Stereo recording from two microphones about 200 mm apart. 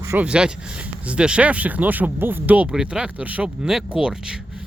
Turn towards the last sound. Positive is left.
turn(degrees=-5)  # may be behind; listen again after turning